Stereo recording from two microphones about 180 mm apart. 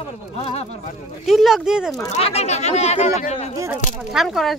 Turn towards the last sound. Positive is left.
turn(degrees=0)  # may be behind; listen again after turning